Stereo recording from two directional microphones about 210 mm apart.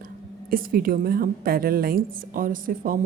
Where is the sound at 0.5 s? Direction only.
45° right (ahead or behind).